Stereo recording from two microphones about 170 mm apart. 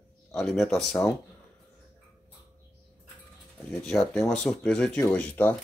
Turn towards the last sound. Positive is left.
turn(degrees=10)  # may be behind; listen again after turning